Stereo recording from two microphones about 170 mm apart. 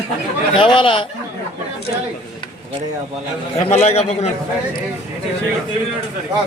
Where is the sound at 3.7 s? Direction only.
40° left (ahead or behind).